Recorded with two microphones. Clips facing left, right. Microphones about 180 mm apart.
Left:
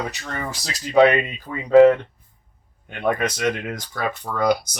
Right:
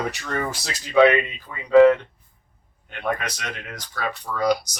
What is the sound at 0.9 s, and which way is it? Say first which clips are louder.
Speech: left 1 dB; 40° left (ahead or behind).